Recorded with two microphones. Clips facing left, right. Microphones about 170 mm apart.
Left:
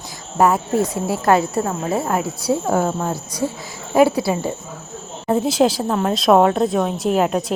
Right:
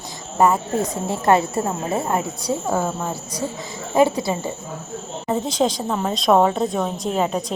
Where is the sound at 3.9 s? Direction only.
10° left (ahead or behind).